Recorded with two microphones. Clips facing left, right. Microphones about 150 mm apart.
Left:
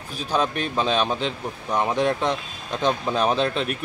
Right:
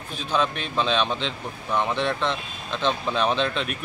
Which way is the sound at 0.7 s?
10° left (ahead or behind).